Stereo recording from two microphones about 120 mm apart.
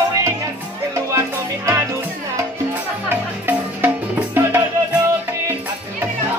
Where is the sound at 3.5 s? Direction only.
15° right (ahead or behind).